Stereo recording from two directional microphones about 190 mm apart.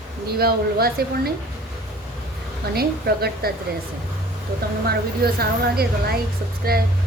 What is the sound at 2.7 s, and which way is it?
Speech, 55° right (ahead or behind).